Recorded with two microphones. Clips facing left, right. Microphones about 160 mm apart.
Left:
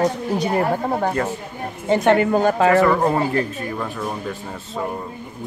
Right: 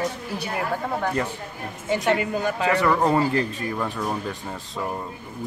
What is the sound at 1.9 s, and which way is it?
Speech, 55° left (ahead or behind).